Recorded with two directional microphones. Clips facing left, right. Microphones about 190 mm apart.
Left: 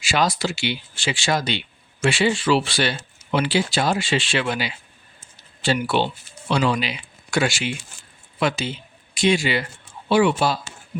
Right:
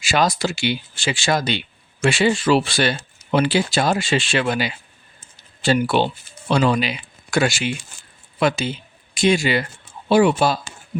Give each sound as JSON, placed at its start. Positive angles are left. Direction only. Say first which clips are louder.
{"t": 0.0, "sound": "speech", "louder": "right 2 dB", "side_deg": -45}